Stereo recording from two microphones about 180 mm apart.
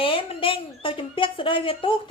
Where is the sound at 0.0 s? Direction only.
30° left (ahead or behind).